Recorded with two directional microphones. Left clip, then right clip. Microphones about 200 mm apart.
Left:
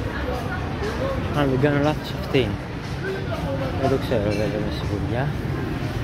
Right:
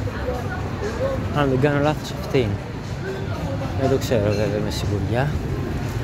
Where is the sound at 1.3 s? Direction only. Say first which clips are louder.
Right 1 dB; 15° right (ahead or behind).